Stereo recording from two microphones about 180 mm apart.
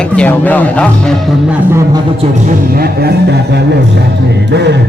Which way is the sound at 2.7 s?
60° right (ahead or behind).